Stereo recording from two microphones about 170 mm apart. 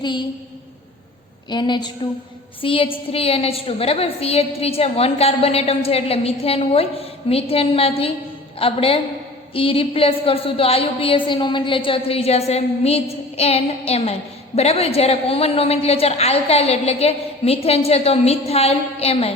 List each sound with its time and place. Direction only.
0.0 s a woman's voice: 25° left (ahead or behind)
1.5 s a woman's voice: 25° left (ahead or behind)